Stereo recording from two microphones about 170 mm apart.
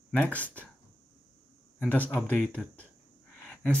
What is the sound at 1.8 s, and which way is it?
Speech, 10° left (ahead or behind).